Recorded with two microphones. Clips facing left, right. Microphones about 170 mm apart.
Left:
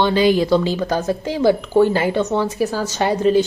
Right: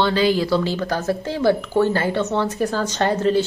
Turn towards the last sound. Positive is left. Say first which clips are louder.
# left 3 dB
turn(degrees=15)  # may be behind; listen again after turning